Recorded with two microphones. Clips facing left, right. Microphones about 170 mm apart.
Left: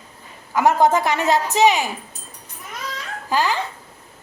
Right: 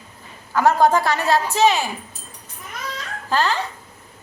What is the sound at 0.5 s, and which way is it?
A woman's voice, 20° left (ahead or behind).